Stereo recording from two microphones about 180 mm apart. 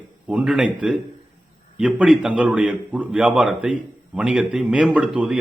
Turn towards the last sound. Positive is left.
turn(degrees=-5)  # may be behind; listen again after turning